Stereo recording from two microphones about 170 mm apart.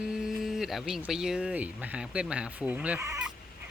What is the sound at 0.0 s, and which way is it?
Speech, 5° right (ahead or behind).